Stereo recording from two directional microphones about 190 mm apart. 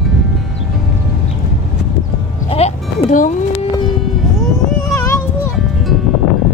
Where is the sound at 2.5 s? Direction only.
30° left (ahead or behind).